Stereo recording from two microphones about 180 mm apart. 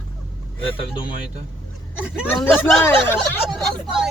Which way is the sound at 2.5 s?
10° left (ahead or behind).